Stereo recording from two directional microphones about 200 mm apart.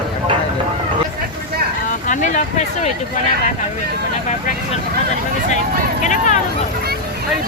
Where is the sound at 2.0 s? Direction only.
40° left (ahead or behind).